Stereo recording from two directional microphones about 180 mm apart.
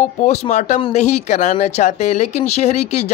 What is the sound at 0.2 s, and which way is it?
Speech, 40° left (ahead or behind).